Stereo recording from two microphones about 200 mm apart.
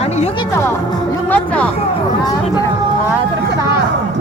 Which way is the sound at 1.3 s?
5° left (ahead or behind).